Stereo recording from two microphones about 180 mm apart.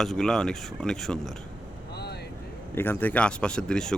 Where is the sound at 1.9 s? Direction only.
65° left (ahead or behind).